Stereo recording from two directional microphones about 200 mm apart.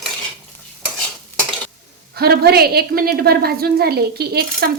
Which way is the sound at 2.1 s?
50° right (ahead or behind).